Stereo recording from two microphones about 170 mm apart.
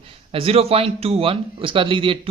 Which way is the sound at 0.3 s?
35° right (ahead or behind).